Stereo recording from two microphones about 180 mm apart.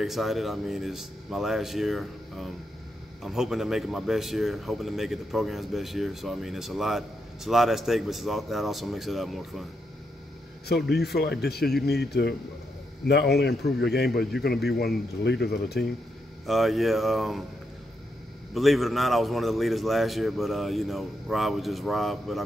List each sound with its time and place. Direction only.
0.0 s a man's voice: centre (ahead or behind)
10.7 s speech: 65° left (ahead or behind)
15.2 s speech: 65° left (ahead or behind)
16.4 s a man's voice: centre (ahead or behind)
18.5 s a man's voice: centre (ahead or behind)